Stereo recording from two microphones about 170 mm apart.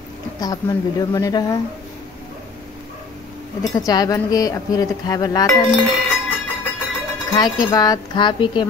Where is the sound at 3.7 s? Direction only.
20° left (ahead or behind).